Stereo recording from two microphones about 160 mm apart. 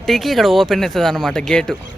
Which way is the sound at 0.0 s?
Centre (ahead or behind).